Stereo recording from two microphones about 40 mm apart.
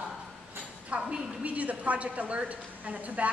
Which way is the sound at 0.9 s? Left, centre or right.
Right.